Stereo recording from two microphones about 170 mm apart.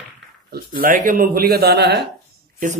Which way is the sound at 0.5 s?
60° right (ahead or behind).